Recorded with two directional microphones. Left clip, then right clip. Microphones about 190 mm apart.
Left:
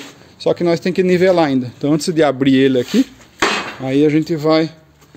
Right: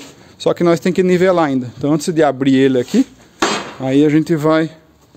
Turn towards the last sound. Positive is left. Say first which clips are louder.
# right 1 dB
turn(degrees=-25)  # may be behind; listen again after turning